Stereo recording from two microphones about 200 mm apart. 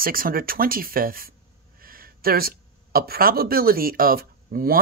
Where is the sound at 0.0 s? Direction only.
45° right (ahead or behind).